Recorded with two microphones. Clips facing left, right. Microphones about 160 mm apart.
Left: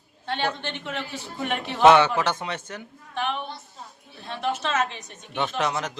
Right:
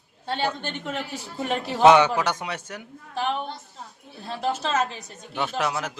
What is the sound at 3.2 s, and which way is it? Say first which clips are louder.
A man's voice: right 2 dB; 35° right (ahead or behind).